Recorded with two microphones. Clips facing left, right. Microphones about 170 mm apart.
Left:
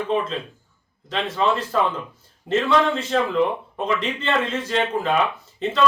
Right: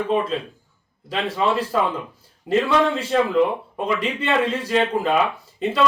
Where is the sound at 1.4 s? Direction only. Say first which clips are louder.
Even; 10° right (ahead or behind).